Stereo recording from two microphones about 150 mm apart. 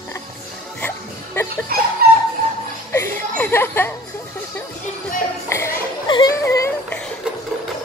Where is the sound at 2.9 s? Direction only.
15° left (ahead or behind).